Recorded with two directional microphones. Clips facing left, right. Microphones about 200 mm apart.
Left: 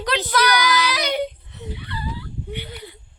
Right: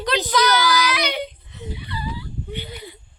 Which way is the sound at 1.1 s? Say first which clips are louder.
Left 4 dB; 55° left (ahead or behind).